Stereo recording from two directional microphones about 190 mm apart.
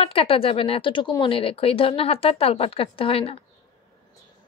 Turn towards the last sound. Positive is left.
turn(degrees=30)  # may be behind; listen again after turning